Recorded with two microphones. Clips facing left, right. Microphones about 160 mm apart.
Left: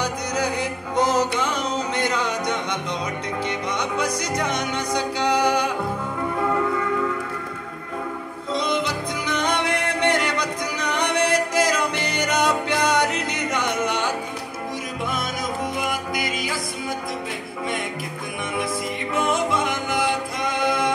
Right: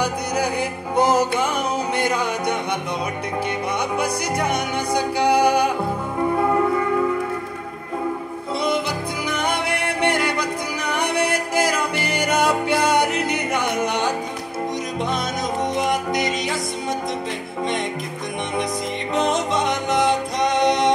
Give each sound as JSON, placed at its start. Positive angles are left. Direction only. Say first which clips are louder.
{"t": 0.6, "sound": "music", "louder": "right 2 dB", "side_deg": -10}
{"t": 4.4, "sound": "music", "louder": "right 3 dB", "side_deg": -10}
{"t": 9.3, "sound": "music", "louder": "left 1 dB", "side_deg": -10}
{"t": 15.8, "sound": "music", "louder": "right 5 dB", "side_deg": -20}
{"t": 19.1, "sound": "music", "louder": "right 2 dB", "side_deg": -20}